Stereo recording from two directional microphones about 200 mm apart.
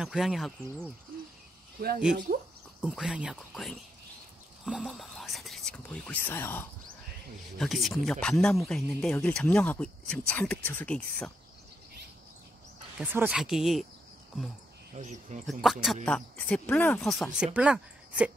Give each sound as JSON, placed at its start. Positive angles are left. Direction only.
{"t": 0.0, "sound": "speech", "side_deg": 0}
{"t": 2.3, "sound": "a sound", "side_deg": -45}
{"t": 2.8, "sound": "speech", "side_deg": -5}
{"t": 7.5, "sound": "speech", "side_deg": 0}
{"t": 13.0, "sound": "speech", "side_deg": -10}
{"t": 15.0, "sound": "speech", "side_deg": -40}
{"t": 15.4, "sound": "speech", "side_deg": 0}